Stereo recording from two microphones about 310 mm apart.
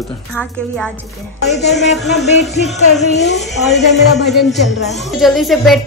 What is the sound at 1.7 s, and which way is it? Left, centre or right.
A man's voice, centre.